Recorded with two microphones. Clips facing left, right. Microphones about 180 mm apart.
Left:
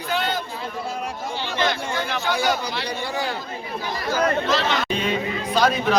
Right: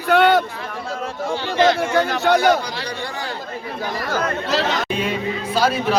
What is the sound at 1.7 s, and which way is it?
Speech, 70° right (ahead or behind).